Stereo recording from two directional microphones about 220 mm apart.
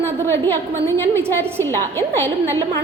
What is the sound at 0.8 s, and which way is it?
A woman's voice, 10° left (ahead or behind).